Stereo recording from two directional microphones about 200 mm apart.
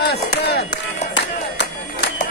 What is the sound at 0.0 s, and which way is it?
Chop, 55° left (ahead or behind).